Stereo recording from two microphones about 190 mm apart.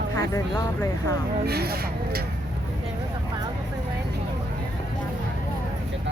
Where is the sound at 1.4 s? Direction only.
55° right (ahead or behind).